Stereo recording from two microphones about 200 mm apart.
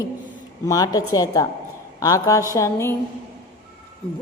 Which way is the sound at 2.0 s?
15° left (ahead or behind).